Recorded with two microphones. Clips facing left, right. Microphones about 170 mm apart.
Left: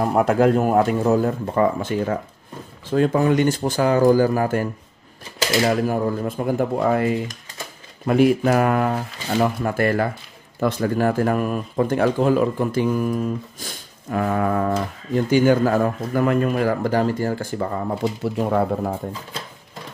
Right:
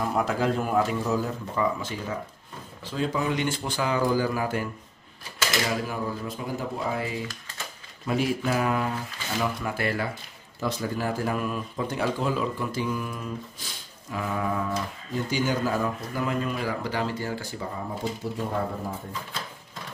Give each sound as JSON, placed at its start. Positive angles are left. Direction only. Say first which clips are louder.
{"t": 0.0, "sound": "speech", "louder": "left 9 dB", "side_deg": 55}
{"t": 5.7, "sound": "speech", "louder": "left 9 dB", "side_deg": 50}